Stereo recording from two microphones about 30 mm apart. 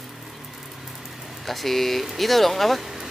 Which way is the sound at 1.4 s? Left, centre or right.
Centre.